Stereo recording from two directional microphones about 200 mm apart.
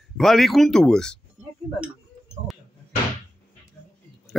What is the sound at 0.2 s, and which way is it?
Speech, centre (ahead or behind).